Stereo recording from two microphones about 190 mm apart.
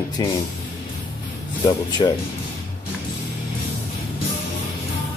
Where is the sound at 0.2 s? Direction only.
20° left (ahead or behind).